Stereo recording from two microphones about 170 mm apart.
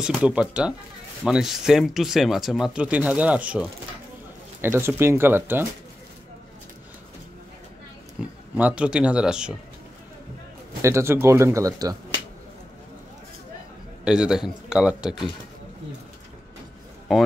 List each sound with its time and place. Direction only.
0.0 s speech: 5° right (ahead or behind)
4.7 s speech: 15° right (ahead or behind)
8.2 s speech: 10° right (ahead or behind)
10.8 s speech: 15° right (ahead or behind)
14.0 s speech: 5° right (ahead or behind)
17.1 s speech: centre (ahead or behind)